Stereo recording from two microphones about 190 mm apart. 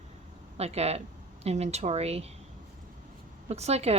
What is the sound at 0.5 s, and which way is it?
A woman's voice, 35° right (ahead or behind).